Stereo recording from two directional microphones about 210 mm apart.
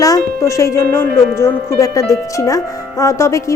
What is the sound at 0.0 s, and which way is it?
Music, 15° left (ahead or behind).